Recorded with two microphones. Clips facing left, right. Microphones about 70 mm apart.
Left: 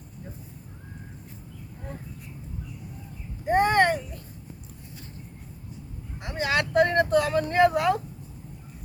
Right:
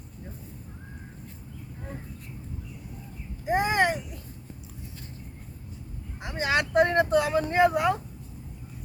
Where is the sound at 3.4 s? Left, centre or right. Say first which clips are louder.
Left 3 dB; centre.